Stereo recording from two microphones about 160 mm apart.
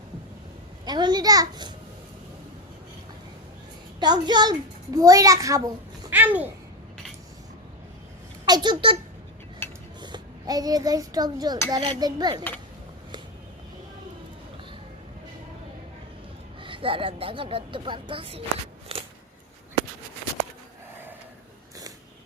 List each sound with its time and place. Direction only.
0.9 s a child's voice: 25° right (ahead or behind)
4.0 s a child's voice: 25° right (ahead or behind); by 6.5 s 10° right (ahead or behind)
8.4 s a child's voice: 25° right (ahead or behind)
10.0 s a child's voice: 25° right (ahead or behind)
16.6 s speech: 35° right (ahead or behind)
18.9 s a sound: 35° right (ahead or behind)